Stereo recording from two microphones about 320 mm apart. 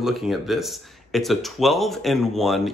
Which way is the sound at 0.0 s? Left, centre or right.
Centre.